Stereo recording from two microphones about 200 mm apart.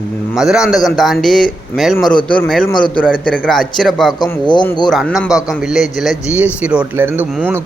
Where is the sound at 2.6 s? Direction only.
25° left (ahead or behind).